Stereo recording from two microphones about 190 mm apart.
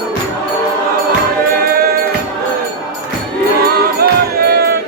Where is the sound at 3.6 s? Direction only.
55° right (ahead or behind).